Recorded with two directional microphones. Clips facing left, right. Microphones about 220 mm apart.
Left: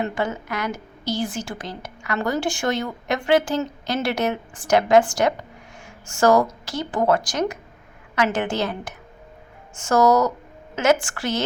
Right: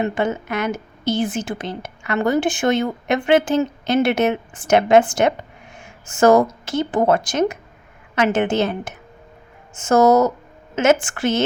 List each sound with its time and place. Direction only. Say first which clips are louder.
0.0 s a woman's voice: right 4 dB; 20° right (ahead or behind)